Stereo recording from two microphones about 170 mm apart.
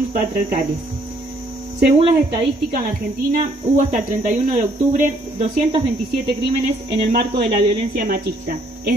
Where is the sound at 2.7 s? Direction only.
55° right (ahead or behind).